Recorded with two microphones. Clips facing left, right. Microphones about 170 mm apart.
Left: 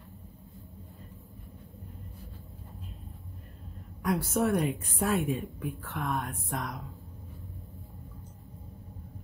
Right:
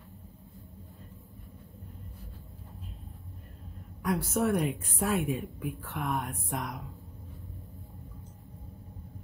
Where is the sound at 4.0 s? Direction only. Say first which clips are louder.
Left 1 dB; centre (ahead or behind); by 6.8 s 15° right (ahead or behind).